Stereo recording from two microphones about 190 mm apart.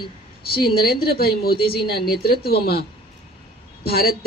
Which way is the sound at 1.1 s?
55° left (ahead or behind).